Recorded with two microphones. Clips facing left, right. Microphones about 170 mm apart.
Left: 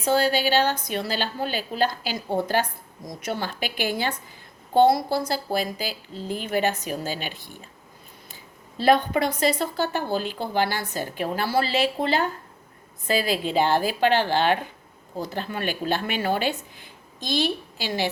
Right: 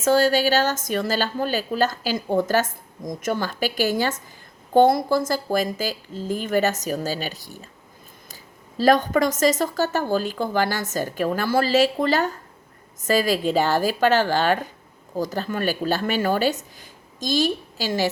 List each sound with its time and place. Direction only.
0.0 s speech: 45° right (ahead or behind)
8.8 s speech: 45° right (ahead or behind)